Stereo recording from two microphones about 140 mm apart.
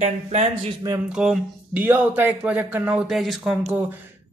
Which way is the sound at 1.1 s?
5° right (ahead or behind).